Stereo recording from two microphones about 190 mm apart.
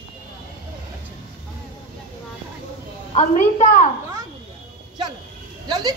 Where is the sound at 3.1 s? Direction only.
40° left (ahead or behind).